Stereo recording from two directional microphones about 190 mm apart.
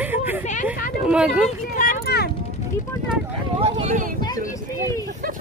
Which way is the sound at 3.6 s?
40° right (ahead or behind).